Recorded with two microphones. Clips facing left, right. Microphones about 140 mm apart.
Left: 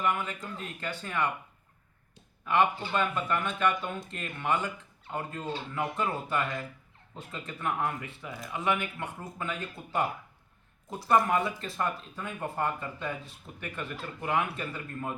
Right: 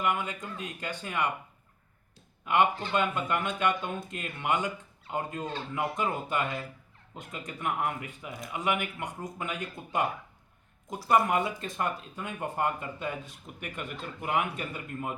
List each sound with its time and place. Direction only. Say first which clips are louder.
0.0 s speech: even; 15° right (ahead or behind)
2.9 s speech: right 1 dB; 20° right (ahead or behind)